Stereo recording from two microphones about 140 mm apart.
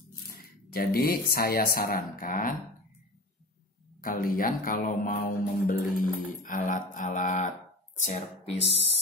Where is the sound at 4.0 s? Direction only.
90° left; by 7.5 s 65° left (ahead or behind).